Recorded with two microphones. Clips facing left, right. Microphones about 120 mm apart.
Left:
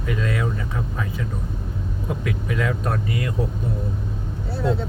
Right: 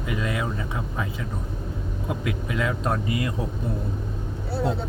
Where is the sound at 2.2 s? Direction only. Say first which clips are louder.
Left 2 dB; 20° right (ahead or behind).